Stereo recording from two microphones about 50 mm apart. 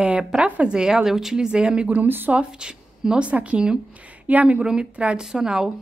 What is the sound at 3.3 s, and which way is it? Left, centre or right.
A woman's voice, right.